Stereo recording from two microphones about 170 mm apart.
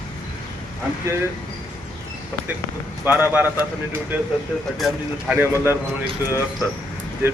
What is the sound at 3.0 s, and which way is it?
Speech, 10° right (ahead or behind).